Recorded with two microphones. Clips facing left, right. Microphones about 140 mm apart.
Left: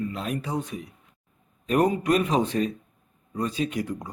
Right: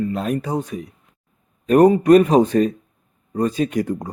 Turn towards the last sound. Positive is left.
turn(degrees=-45)  # may be behind; listen again after turning